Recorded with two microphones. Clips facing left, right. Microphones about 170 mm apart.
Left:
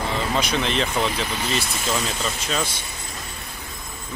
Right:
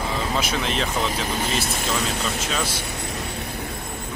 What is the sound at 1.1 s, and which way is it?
Speech, 45° right (ahead or behind).